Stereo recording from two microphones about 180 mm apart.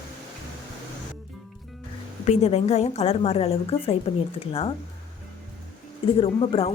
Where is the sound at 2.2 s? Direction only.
40° left (ahead or behind).